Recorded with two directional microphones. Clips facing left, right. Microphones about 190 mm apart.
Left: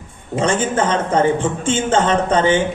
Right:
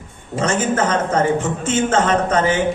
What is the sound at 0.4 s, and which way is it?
A man's voice, 30° left (ahead or behind).